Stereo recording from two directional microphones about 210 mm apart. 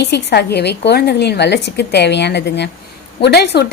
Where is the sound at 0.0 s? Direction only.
50° left (ahead or behind).